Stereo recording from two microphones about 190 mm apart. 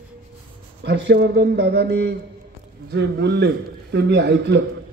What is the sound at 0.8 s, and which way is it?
Speech, 65° right (ahead or behind).